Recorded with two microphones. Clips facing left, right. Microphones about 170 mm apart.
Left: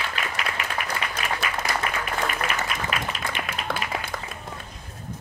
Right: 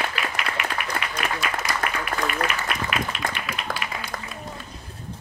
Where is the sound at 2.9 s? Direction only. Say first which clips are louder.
Right 4 dB; 35° left (ahead or behind).